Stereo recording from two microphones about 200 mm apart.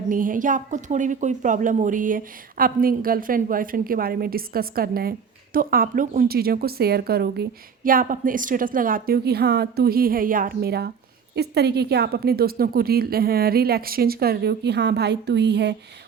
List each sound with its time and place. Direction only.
0.1 s speech: 40° right (ahead or behind)